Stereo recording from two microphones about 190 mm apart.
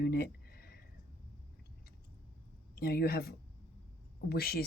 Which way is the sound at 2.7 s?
55° left (ahead or behind).